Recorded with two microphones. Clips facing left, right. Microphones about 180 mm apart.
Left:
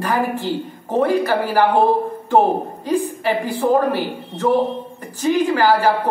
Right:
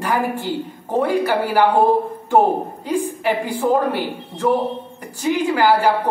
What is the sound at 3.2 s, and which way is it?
A woman's voice, 15° right (ahead or behind).